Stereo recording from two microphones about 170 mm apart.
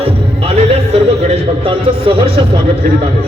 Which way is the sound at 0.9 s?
35° right (ahead or behind).